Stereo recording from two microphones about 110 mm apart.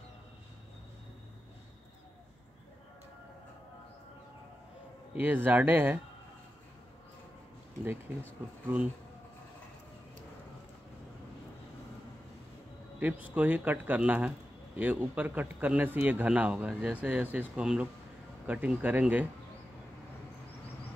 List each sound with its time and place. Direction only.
5.1 s speech: 15° right (ahead or behind)
8.7 s speech: 15° right (ahead or behind)
13.0 s speech: 15° right (ahead or behind)